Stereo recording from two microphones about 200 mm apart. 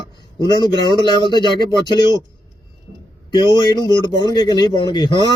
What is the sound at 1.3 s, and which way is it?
Speech, 20° left (ahead or behind).